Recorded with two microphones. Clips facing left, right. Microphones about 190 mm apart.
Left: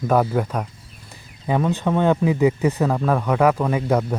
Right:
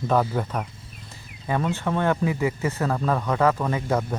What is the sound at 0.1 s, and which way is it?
A man's voice, 10° left (ahead or behind).